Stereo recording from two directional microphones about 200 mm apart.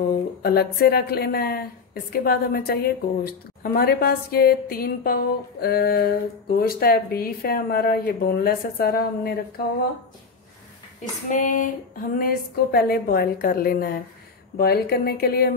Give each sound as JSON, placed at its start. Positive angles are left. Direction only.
{"t": 0.1, "sound": "a woman's voice", "side_deg": 50}
{"t": 11.2, "sound": "a sound", "side_deg": 40}
{"t": 12.2, "sound": "a woman's voice", "side_deg": 50}